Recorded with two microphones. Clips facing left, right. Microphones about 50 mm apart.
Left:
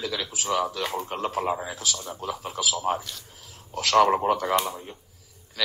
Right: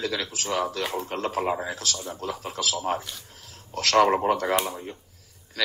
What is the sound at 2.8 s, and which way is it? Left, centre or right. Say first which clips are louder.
Speech: left 1 dB; centre.